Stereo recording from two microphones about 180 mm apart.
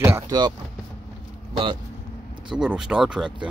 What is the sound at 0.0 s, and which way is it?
Speech, 20° right (ahead or behind).